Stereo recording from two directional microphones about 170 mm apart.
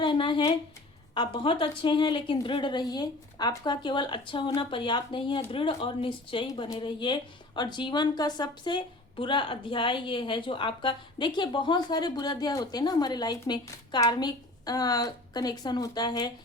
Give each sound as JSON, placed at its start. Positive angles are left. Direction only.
{"t": 0.0, "sound": "speech", "side_deg": 30}